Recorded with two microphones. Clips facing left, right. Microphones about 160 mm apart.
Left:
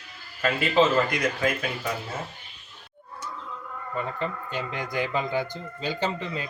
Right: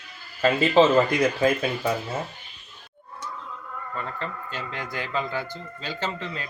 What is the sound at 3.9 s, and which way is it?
Speech, 15° left (ahead or behind).